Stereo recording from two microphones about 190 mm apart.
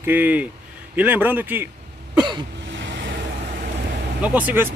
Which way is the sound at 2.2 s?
25° right (ahead or behind).